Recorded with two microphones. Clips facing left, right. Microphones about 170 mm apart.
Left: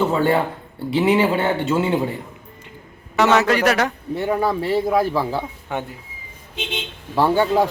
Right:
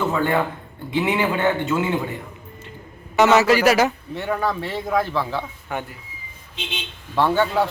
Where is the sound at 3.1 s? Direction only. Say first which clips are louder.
Right 1 dB; 5° right (ahead or behind).